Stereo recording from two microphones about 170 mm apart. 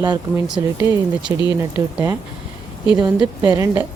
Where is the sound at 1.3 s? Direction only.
15° right (ahead or behind).